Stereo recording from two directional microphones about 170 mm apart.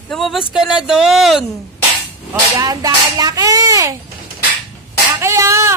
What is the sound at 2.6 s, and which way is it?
A child's voice, 20° right (ahead or behind).